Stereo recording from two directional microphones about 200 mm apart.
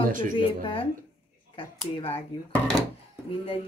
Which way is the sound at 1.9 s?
30° left (ahead or behind).